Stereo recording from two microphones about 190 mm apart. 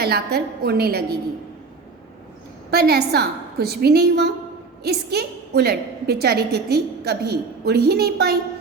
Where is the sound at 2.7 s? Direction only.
55° right (ahead or behind).